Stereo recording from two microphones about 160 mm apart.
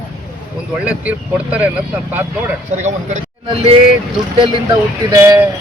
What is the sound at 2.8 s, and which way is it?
Speech, 45° right (ahead or behind).